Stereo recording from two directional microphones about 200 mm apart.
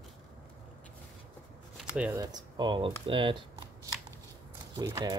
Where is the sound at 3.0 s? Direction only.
25° right (ahead or behind).